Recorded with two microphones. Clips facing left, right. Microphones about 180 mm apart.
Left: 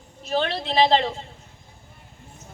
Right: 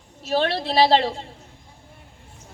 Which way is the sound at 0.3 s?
35° right (ahead or behind).